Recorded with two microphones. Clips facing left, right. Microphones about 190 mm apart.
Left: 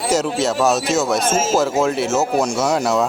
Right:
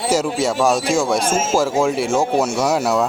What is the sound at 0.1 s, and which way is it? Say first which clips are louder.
A man's voice: even; 10° right (ahead or behind).